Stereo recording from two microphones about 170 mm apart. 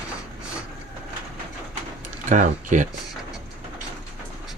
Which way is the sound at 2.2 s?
45° right (ahead or behind).